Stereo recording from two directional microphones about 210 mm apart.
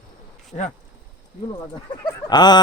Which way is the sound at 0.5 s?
40° left (ahead or behind).